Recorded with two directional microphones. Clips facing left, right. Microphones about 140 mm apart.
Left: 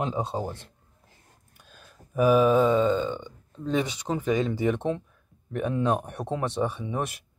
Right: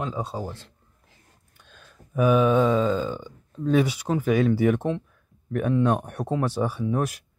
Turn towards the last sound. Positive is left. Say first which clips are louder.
# right 5 dB
turn(degrees=0)  # may be behind; listen again after turning